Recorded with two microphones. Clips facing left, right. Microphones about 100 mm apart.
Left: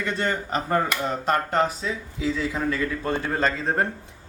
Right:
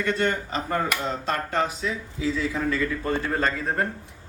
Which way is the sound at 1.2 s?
50° left (ahead or behind).